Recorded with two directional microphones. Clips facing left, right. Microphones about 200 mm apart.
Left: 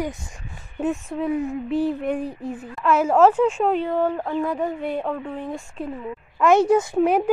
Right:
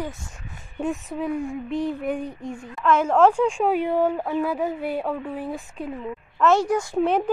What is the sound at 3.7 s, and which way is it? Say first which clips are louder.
A woman's voice: even; 10° right (ahead or behind).